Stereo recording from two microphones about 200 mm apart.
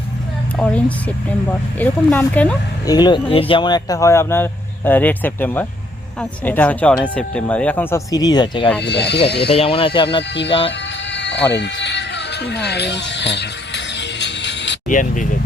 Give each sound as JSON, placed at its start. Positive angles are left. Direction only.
{"t": 0.5, "sound": "speech", "side_deg": 5}
{"t": 2.8, "sound": "speech", "side_deg": 20}
{"t": 8.8, "sound": "speech", "side_deg": 55}
{"t": 9.5, "sound": "speech", "side_deg": 25}
{"t": 10.2, "sound": "speech", "side_deg": 60}
{"t": 10.7, "sound": "music", "side_deg": 60}
{"t": 14.8, "sound": "speech", "side_deg": 40}